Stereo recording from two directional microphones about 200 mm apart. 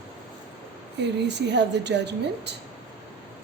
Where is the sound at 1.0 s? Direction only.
60° right (ahead or behind).